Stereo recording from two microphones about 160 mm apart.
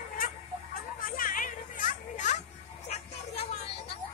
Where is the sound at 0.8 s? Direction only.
65° left (ahead or behind).